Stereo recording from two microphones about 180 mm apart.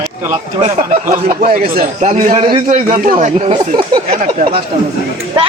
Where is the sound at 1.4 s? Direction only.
50° right (ahead or behind).